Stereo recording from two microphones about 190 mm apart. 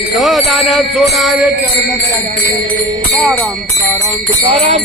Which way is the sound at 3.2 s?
5° left (ahead or behind).